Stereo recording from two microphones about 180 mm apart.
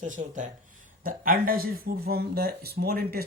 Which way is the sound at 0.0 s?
45° right (ahead or behind).